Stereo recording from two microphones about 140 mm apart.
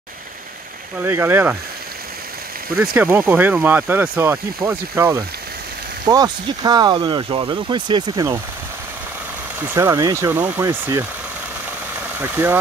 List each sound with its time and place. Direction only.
1.0 s speech: 15° right (ahead or behind)
2.8 s speech: 15° right (ahead or behind)
6.0 s speech: 30° right (ahead or behind)
9.6 s speech: 20° right (ahead or behind)
10.3 s speech: 15° right (ahead or behind)
12.2 s speech: 15° right (ahead or behind)